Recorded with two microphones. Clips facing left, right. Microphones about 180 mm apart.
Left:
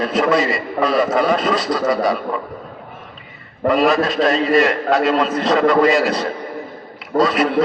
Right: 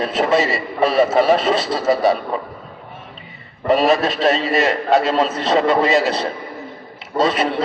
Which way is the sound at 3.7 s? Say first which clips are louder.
Right 1 dB; 25° right (ahead or behind).